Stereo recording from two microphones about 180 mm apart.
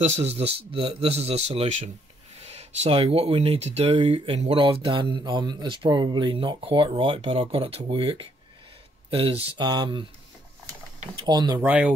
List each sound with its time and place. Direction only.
0.0 s speech: 35° right (ahead or behind)
11.2 s speech: 20° right (ahead or behind)
11.6 s speech: 10° right (ahead or behind)